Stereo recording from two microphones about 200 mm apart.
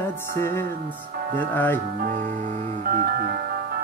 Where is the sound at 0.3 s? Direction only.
10° left (ahead or behind).